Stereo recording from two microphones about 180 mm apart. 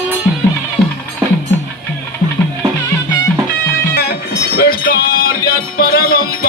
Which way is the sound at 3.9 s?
65° left (ahead or behind).